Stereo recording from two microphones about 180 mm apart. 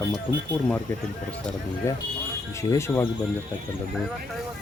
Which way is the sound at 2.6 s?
15° left (ahead or behind).